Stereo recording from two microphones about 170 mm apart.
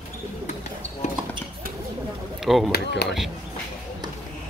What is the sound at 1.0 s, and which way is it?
Speech, 40° left (ahead or behind).